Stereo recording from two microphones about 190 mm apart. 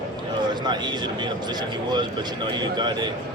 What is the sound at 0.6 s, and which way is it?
Speech, 20° right (ahead or behind).